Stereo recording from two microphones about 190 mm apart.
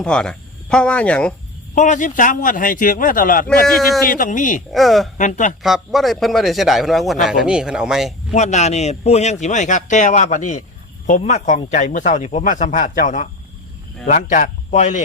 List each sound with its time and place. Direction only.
0.0 s speech: 5° left (ahead or behind)
1.7 s a man's voice: 40° left (ahead or behind)
3.7 s a man's voice: centre (ahead or behind)
4.0 s a man's voice: 45° left (ahead or behind)
4.7 s a man's voice: centre (ahead or behind)
5.1 s speech: 40° left (ahead or behind)
5.6 s a man's voice: centre (ahead or behind)
8.3 s speech: 35° left (ahead or behind)